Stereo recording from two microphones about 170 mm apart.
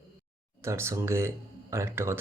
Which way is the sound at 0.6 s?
15° right (ahead or behind).